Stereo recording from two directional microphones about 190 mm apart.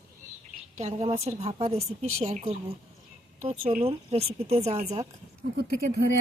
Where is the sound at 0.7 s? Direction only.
35° right (ahead or behind).